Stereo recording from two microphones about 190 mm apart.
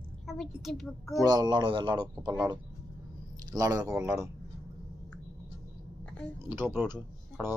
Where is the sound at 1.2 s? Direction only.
20° right (ahead or behind).